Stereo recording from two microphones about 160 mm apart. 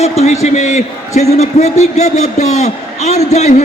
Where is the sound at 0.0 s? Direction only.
40° left (ahead or behind).